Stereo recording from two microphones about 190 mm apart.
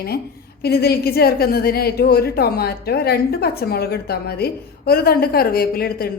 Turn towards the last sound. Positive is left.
turn(degrees=55)  # may be behind; listen again after turning